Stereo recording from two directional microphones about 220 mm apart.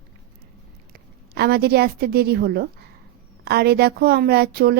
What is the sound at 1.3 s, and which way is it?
Speech, 45° right (ahead or behind).